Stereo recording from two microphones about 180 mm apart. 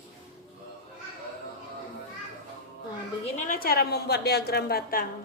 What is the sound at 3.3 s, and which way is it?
A woman's voice, 50° left (ahead or behind).